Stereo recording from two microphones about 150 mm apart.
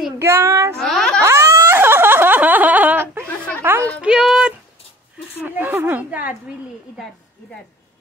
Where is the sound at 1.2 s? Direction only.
20° right (ahead or behind).